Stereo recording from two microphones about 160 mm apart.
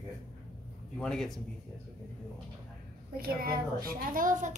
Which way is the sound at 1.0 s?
5° left (ahead or behind).